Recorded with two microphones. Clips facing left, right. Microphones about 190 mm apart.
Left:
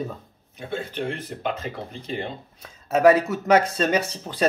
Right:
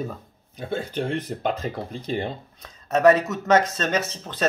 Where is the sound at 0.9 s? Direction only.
35° right (ahead or behind).